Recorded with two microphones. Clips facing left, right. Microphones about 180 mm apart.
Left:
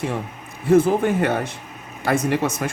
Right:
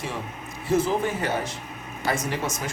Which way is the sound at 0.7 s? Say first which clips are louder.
Left 7 dB; 55° left (ahead or behind).